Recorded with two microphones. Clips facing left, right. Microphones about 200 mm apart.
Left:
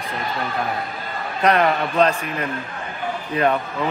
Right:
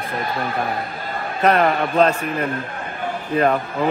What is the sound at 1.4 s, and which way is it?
Speech, centre (ahead or behind).